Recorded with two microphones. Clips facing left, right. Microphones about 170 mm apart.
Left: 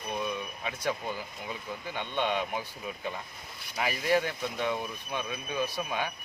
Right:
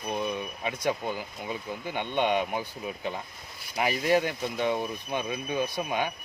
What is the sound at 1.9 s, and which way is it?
Speech, 15° right (ahead or behind).